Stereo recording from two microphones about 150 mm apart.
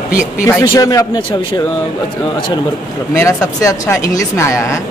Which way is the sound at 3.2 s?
20° left (ahead or behind).